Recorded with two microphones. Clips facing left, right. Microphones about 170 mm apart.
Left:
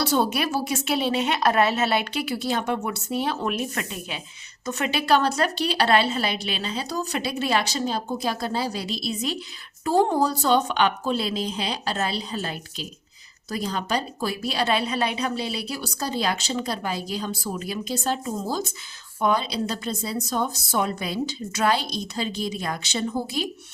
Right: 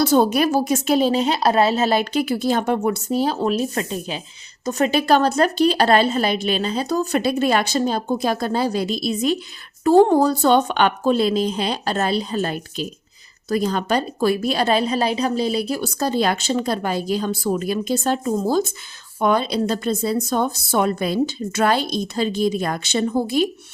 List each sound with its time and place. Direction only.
0.0 s a woman's voice: 45° right (ahead or behind)